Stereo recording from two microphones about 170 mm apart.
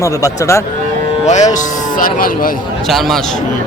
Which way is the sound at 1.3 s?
45° left (ahead or behind).